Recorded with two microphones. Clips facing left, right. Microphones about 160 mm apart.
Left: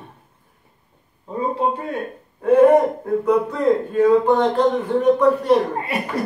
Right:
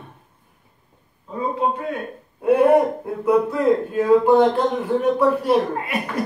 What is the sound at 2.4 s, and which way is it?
Speech, 10° right (ahead or behind).